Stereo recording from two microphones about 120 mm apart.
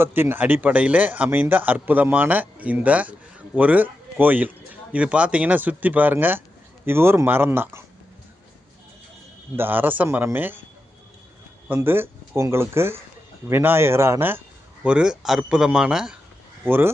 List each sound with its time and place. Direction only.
0.0 s speech: 20° right (ahead or behind)
9.6 s speech: 15° right (ahead or behind)
11.7 s speech: 20° right (ahead or behind)
16.6 s speech: 20° right (ahead or behind)